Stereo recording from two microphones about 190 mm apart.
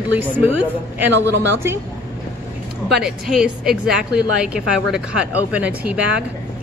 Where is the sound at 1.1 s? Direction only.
70° right (ahead or behind).